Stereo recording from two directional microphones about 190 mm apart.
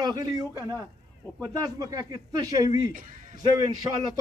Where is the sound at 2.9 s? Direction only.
45° right (ahead or behind).